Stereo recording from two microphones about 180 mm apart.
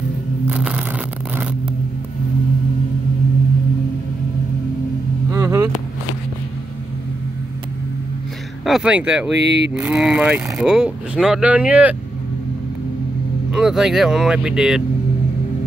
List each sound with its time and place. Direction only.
0.5 s scissors: 10° right (ahead or behind)
5.3 s vehicle: 15° right (ahead or behind)
8.6 s speech: 5° right (ahead or behind)
13.5 s speech: 5° right (ahead or behind)